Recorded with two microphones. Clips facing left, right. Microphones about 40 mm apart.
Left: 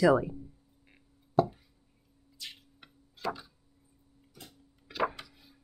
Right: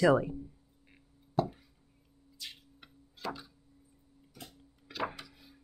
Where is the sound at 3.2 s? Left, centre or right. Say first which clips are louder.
Left 4 dB; centre.